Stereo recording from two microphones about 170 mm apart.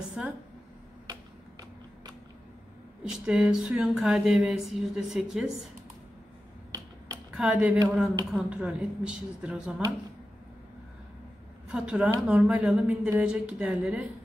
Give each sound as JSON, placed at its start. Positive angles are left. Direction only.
{"t": 0.2, "sound": "speech", "side_deg": -5}
{"t": 3.1, "sound": "speech", "side_deg": -5}
{"t": 7.2, "sound": "speech", "side_deg": -5}
{"t": 11.7, "sound": "a woman's voice", "side_deg": -5}